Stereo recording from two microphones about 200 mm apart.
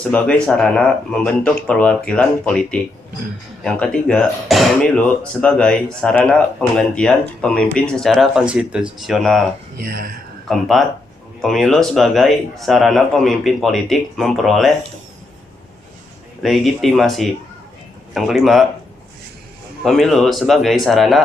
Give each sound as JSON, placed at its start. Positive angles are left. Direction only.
{"t": 0.0, "sound": "speech", "side_deg": 5}
{"t": 9.7, "sound": "speech", "side_deg": -50}
{"t": 10.5, "sound": "speech", "side_deg": 0}
{"t": 16.4, "sound": "speech", "side_deg": 0}
{"t": 19.8, "sound": "speech", "side_deg": 0}